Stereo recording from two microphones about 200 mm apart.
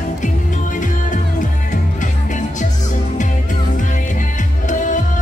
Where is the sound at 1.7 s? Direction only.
40° left (ahead or behind).